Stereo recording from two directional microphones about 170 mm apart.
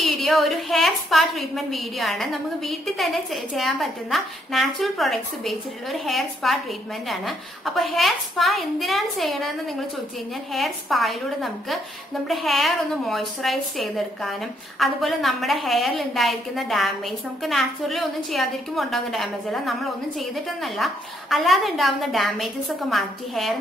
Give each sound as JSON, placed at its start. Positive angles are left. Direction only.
{"t": 0.0, "sound": "a woman's voice", "side_deg": 0}